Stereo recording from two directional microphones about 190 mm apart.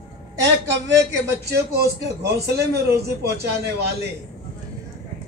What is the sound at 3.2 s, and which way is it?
Speech, 55° right (ahead or behind).